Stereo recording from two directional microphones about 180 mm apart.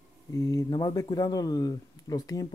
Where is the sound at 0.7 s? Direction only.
25° left (ahead or behind).